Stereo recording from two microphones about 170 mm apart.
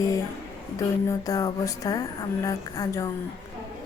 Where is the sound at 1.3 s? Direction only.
20° left (ahead or behind).